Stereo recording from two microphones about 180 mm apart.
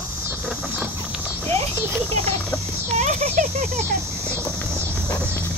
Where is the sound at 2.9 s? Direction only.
40° right (ahead or behind).